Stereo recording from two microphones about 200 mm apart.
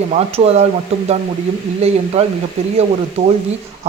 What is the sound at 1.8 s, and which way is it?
Speech, 30° right (ahead or behind).